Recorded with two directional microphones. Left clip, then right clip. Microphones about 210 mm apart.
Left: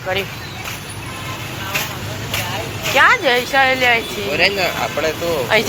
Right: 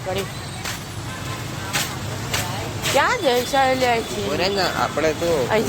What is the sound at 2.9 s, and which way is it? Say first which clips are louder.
Speech: left 6 dB; 10° right (ahead or behind).